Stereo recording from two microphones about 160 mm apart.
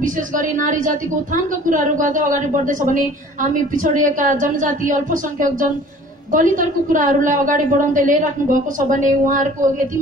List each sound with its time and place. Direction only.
0.0 s a woman's voice: 55° right (ahead or behind)